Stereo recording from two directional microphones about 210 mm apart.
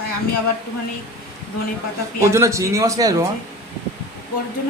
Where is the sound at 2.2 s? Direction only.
15° right (ahead or behind).